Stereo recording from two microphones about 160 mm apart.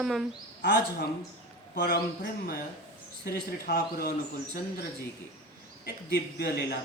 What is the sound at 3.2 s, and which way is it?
Speech, 75° left (ahead or behind).